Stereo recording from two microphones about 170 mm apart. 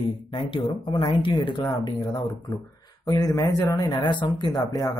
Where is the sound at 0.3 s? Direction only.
30° left (ahead or behind).